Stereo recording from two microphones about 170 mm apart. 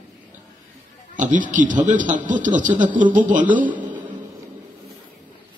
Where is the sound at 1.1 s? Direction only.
50° right (ahead or behind).